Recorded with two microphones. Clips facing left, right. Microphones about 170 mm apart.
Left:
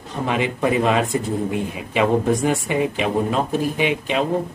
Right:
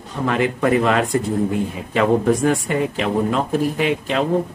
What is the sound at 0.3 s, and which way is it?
Speech, 20° left (ahead or behind).